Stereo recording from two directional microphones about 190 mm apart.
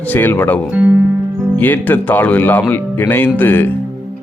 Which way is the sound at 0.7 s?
10° right (ahead or behind).